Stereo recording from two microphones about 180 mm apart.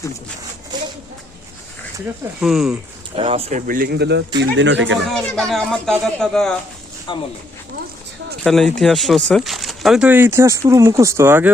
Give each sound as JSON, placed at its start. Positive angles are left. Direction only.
{"t": 0.7, "sound": "a sound", "side_deg": -25}
{"t": 2.4, "sound": "speech", "side_deg": 0}
{"t": 3.2, "sound": "speech", "side_deg": -30}
{"t": 3.7, "sound": "speech", "side_deg": -60}
{"t": 4.4, "sound": "speech", "side_deg": -80}
{"t": 5.0, "sound": "speech", "side_deg": 5}
{"t": 8.4, "sound": "speech", "side_deg": 0}